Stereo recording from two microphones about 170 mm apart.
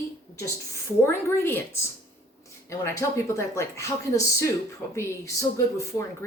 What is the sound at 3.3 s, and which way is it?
A woman's voice, 15° left (ahead or behind).